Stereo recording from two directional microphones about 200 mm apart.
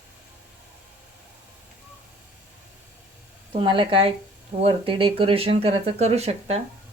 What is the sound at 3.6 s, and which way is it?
Speech, 25° right (ahead or behind).